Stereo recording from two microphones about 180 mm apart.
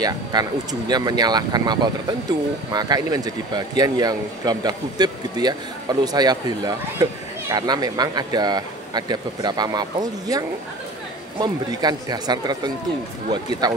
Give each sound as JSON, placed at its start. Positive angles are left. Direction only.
{"t": 0.0, "sound": "speech", "side_deg": -20}